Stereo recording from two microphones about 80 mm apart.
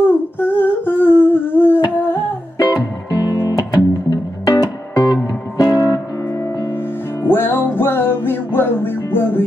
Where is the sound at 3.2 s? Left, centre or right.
Left.